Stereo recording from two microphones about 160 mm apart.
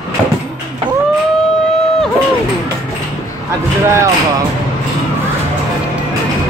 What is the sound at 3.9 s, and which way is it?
Speech, 20° right (ahead or behind).